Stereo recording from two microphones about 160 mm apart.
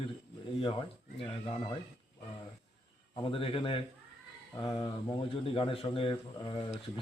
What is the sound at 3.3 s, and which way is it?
A man's voice, 35° left (ahead or behind).